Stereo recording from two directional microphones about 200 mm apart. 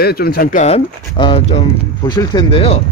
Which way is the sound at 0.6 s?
25° left (ahead or behind).